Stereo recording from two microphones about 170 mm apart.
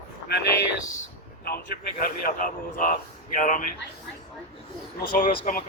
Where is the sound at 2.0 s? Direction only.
55° left (ahead or behind).